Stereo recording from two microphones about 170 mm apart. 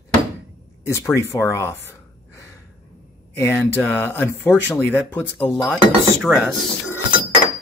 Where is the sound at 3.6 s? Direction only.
15° left (ahead or behind).